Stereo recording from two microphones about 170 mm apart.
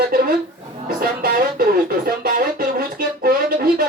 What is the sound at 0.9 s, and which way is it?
Music, 60° right (ahead or behind).